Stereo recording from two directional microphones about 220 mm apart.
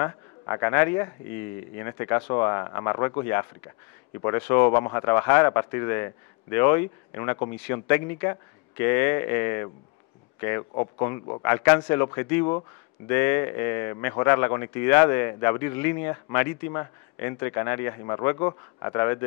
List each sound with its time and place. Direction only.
0.0 s a man's voice: 15° left (ahead or behind)
10.7 s speech: 20° left (ahead or behind)
11.4 s speech: 10° left (ahead or behind)